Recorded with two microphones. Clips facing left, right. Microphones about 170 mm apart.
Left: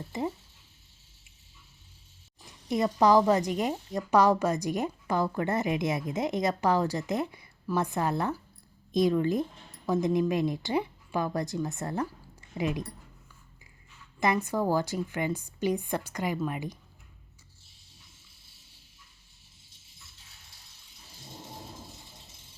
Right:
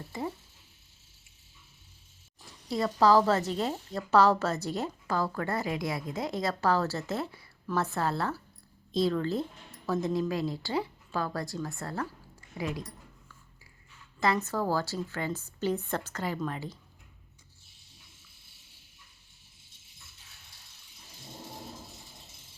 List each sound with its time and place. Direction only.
0.1 s speech: 20° left (ahead or behind)
2.6 s a woman's voice: 20° left (ahead or behind)
14.2 s a woman's voice: 15° left (ahead or behind)